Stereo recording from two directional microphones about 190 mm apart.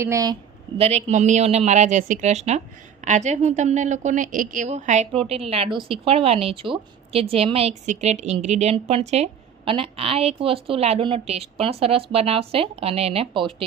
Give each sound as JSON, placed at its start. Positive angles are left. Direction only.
{"t": 0.0, "sound": "a woman's voice", "side_deg": -15}
{"t": 0.8, "sound": "a woman's voice", "side_deg": -35}